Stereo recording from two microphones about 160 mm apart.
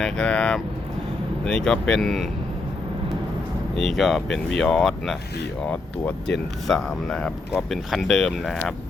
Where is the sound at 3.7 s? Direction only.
Centre (ahead or behind).